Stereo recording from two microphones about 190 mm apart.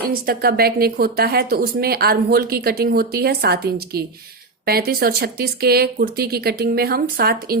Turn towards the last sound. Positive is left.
turn(degrees=-55)  # may be behind; listen again after turning